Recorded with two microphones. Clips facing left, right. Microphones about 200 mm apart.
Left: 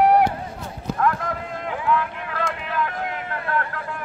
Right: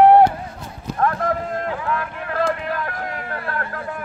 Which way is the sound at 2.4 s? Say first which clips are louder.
Right 2 dB; 40° right (ahead or behind).